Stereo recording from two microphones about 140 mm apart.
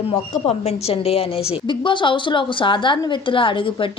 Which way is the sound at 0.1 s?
50° left (ahead or behind).